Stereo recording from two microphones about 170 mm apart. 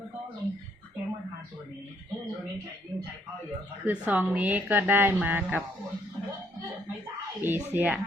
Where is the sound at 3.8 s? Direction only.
10° right (ahead or behind).